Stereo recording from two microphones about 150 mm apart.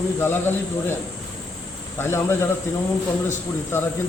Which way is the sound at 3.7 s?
15° left (ahead or behind).